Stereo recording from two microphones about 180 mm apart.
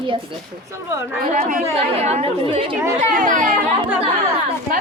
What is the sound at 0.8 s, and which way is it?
Speech, 15° right (ahead or behind).